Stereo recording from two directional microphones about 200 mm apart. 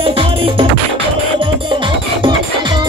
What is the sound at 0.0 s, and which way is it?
Music, 25° right (ahead or behind).